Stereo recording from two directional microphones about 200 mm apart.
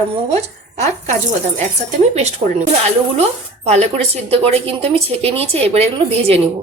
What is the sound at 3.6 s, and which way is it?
Speech, 35° right (ahead or behind).